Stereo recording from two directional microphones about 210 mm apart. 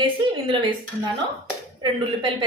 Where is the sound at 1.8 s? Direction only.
25° right (ahead or behind).